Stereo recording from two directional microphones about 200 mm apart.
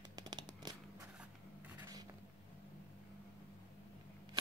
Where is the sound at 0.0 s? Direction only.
20° right (ahead or behind).